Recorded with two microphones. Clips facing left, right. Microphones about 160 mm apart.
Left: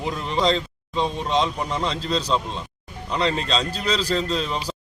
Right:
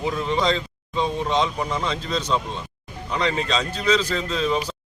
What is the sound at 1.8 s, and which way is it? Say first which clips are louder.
Speech: left 1 dB; 35° left (ahead or behind).